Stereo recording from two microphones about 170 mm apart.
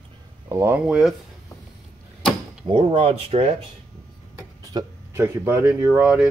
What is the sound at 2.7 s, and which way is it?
Speech, 35° right (ahead or behind).